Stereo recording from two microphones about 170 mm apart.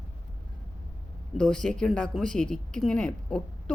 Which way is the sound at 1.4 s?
5° left (ahead or behind).